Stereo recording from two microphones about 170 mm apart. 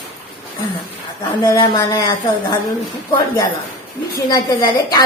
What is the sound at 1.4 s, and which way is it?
A woman's voice, 20° left (ahead or behind).